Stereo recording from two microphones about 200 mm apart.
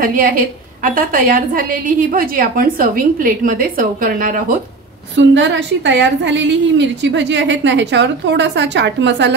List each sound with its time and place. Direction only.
0.0 s a woman's voice: 45° right (ahead or behind)
5.1 s a woman's voice: 65° right (ahead or behind)